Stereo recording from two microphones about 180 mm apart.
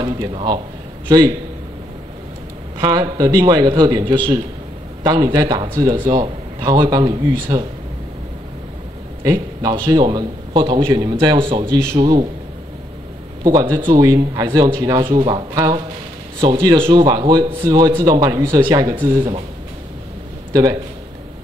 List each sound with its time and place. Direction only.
0.0 s a man's voice: 25° right (ahead or behind)
2.8 s speech: 20° right (ahead or behind)
9.2 s speech: 20° right (ahead or behind)
12.0 s speech: 25° right (ahead or behind)
13.4 s speech: 20° right (ahead or behind)